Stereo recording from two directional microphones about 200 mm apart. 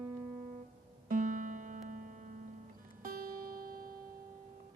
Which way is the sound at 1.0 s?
40° right (ahead or behind).